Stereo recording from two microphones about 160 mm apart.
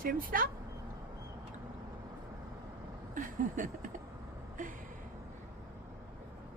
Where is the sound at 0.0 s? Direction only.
60° right (ahead or behind).